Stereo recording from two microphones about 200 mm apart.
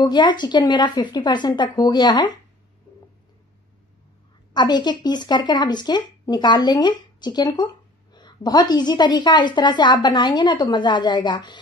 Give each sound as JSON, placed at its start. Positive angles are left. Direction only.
{"t": 0.0, "sound": "speech", "side_deg": 20}
{"t": 4.6, "sound": "speech", "side_deg": 20}